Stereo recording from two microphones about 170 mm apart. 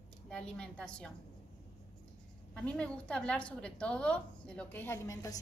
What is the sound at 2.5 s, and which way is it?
A woman's voice, 5° left (ahead or behind).